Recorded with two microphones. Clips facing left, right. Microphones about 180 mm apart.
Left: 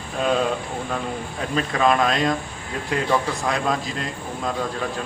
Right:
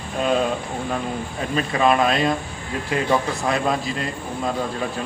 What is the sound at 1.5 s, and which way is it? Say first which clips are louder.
Speech: right 1 dB; 5° right (ahead or behind).